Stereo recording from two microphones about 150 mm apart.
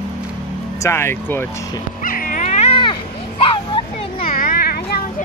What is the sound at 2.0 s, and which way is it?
Dog, 65° left (ahead or behind).